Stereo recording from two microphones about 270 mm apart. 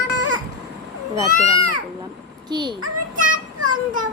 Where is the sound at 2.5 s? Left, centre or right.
Centre.